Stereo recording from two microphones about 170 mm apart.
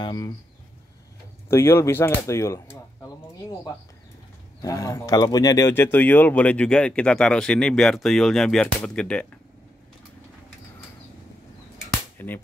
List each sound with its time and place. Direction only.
0.0 s speech: 25° left (ahead or behind)
1.5 s speech: 15° left (ahead or behind)
12.2 s music: 10° left (ahead or behind)